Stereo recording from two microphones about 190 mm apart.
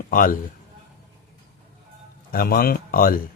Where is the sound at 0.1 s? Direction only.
45° left (ahead or behind).